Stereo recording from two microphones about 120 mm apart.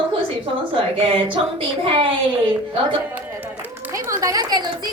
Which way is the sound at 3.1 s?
15° right (ahead or behind).